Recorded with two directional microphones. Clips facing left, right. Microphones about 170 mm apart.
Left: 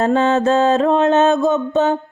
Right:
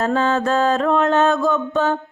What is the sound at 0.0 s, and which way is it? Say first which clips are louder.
Mantra: left 4 dB; 25° left (ahead or behind).